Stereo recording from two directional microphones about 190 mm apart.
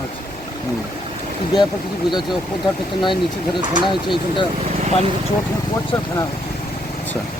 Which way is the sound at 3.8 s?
25° left (ahead or behind).